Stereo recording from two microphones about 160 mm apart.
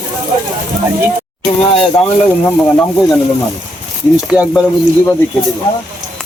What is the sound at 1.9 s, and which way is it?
Speech, 15° left (ahead or behind).